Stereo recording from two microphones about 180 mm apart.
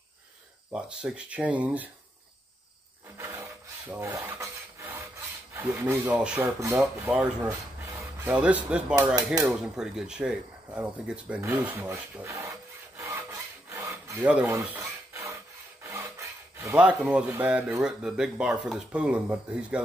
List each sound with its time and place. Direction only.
0.7 s speech: 5° right (ahead or behind)
3.2 s filing: 15° right (ahead or behind)
5.5 s speech: 10° right (ahead or behind)
6.8 s rub: 5° right (ahead or behind)
8.4 s speech: 5° right (ahead or behind)
9.5 s a sound: centre (ahead or behind)
15.8 s rub: 15° right (ahead or behind)
16.5 s speech: 10° right (ahead or behind)